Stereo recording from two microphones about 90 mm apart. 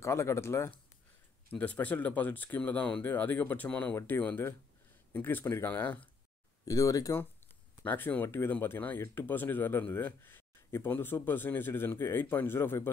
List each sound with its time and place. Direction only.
0.0 s speech: 30° left (ahead or behind)
1.5 s speech: 15° left (ahead or behind)
6.6 s speech: 40° left (ahead or behind)
7.8 s speech: 20° left (ahead or behind)